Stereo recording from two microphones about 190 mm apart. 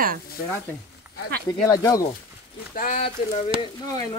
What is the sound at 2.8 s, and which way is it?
Speech, 45° left (ahead or behind).